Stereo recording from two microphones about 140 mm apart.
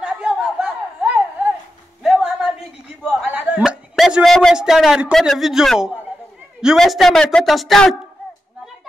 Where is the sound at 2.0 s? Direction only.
5° right (ahead or behind).